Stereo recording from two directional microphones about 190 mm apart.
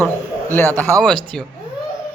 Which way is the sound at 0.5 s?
10° left (ahead or behind).